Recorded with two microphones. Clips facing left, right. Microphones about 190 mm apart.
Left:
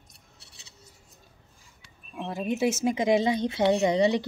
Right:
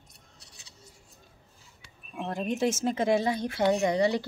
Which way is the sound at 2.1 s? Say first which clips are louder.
Left 1 dB; centre (ahead or behind).